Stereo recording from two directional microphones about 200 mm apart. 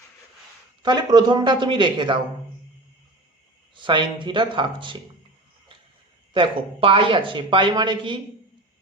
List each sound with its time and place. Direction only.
0.8 s speech: 20° right (ahead or behind)
3.8 s speech: 25° right (ahead or behind)
6.3 s speech: 25° right (ahead or behind)